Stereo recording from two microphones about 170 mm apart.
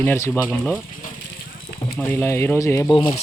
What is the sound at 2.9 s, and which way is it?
Speech, 30° left (ahead or behind).